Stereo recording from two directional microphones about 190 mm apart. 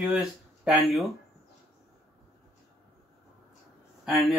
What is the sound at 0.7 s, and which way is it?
Speech, centre (ahead or behind).